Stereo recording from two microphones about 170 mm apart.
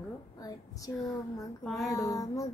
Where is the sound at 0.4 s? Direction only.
20° left (ahead or behind).